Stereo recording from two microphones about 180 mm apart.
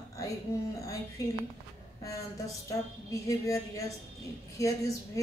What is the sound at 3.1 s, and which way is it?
A woman's voice, 15° left (ahead or behind).